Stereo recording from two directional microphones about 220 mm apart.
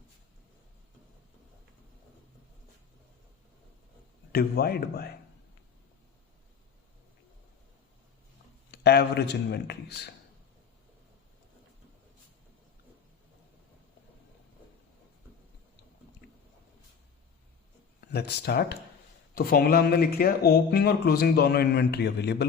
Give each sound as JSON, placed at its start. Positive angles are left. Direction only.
{"t": 4.3, "sound": "speech", "side_deg": 45}
{"t": 8.7, "sound": "speech", "side_deg": 50}
{"t": 18.1, "sound": "speech", "side_deg": 50}